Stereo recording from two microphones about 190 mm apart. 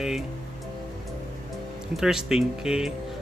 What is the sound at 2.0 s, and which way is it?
Speech, 5° right (ahead or behind).